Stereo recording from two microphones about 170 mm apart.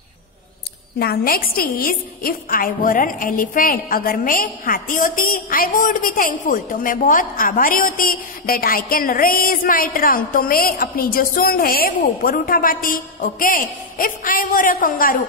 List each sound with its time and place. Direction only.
0.9 s a woman's voice: 65° left (ahead or behind)